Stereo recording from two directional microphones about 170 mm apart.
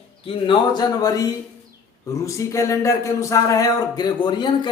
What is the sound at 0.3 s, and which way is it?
Speech, 30° left (ahead or behind).